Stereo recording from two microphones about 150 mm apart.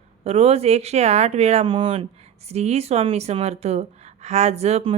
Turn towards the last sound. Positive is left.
turn(degrees=-45)  # may be behind; listen again after turning